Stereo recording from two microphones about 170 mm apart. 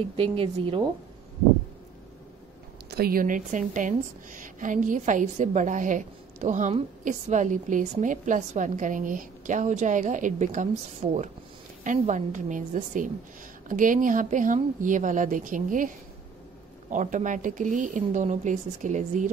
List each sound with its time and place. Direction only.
0.1 s a woman's voice: 30° right (ahead or behind)
2.9 s a woman's voice: 65° right (ahead or behind)
16.9 s a woman's voice: 50° right (ahead or behind)